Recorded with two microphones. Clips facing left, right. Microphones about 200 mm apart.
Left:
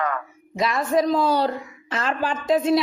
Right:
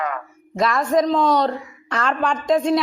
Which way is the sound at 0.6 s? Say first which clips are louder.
Right 2 dB; centre (ahead or behind).